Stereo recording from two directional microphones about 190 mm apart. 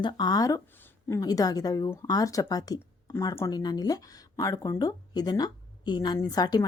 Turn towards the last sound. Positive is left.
turn(degrees=20)  # may be behind; listen again after turning